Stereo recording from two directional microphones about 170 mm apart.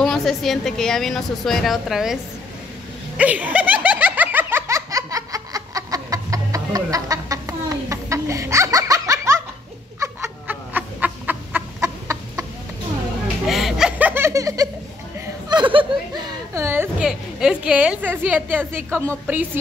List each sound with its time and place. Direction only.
0.0 s a woman's voice: centre (ahead or behind)
3.2 s laughter: 10° right (ahead or behind)
9.9 s chicken: 15° right (ahead or behind)
13.5 s laughter: centre (ahead or behind); by 14.7 s 20° right (ahead or behind)
15.5 s a sound: 30° right (ahead or behind)
16.5 s a woman's voice: 15° right (ahead or behind)